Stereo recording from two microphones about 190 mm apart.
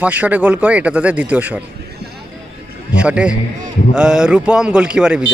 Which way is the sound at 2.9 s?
5° right (ahead or behind).